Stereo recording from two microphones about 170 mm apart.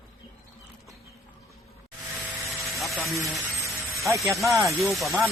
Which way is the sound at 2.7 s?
Centre (ahead or behind).